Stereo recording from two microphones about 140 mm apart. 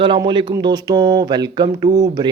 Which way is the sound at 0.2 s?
35° right (ahead or behind).